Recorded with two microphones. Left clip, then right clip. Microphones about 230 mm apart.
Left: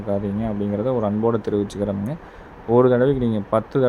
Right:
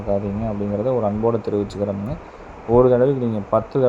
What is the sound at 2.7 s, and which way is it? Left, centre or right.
Speech, centre.